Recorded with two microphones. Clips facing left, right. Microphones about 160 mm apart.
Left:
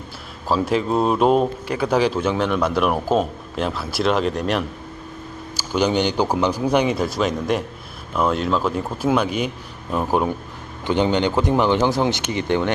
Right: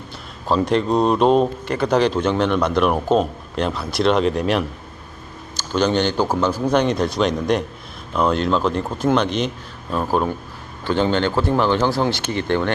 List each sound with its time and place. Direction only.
0.4 s a man's voice: 5° left (ahead or behind)
5.5 s a man's voice: 10° left (ahead or behind)